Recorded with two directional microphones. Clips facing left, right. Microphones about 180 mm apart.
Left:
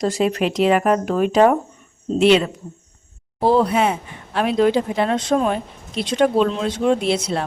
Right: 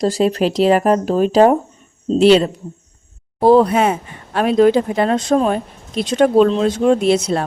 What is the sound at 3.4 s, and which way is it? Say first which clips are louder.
Speech: right 5 dB; 45° right (ahead or behind).